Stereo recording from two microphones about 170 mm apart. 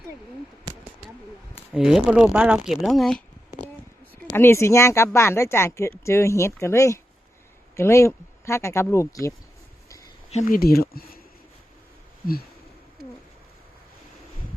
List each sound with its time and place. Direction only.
0.7 s a sound: 25° right (ahead or behind)
1.7 s speech: 5° right (ahead or behind)
4.3 s speech: 15° left (ahead or behind)
10.3 s speech: 60° left (ahead or behind)